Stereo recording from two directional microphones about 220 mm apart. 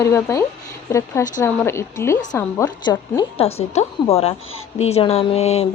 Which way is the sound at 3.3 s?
25° left (ahead or behind).